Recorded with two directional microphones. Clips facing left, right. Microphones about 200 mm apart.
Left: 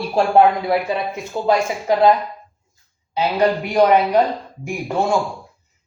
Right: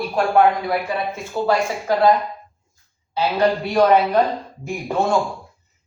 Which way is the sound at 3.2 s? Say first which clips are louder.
Left 1 dB; 15° left (ahead or behind).